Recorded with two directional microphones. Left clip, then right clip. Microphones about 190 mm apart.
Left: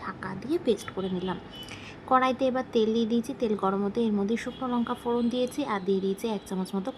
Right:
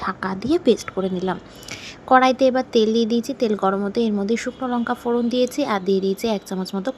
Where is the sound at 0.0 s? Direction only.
30° right (ahead or behind).